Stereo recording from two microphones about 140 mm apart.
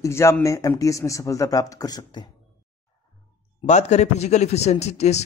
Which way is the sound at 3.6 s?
55° left (ahead or behind).